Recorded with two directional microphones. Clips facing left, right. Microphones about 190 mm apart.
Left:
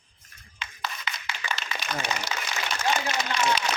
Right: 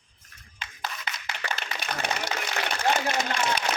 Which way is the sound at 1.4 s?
55° right (ahead or behind).